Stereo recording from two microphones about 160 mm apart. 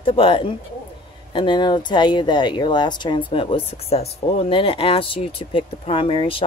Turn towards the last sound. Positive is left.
turn(degrees=35)  # may be behind; listen again after turning